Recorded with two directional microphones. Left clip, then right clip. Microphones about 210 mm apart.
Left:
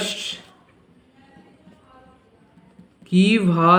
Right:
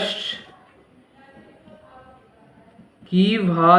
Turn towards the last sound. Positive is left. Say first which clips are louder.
# right 1 dB
turn(degrees=35)  # may be behind; listen again after turning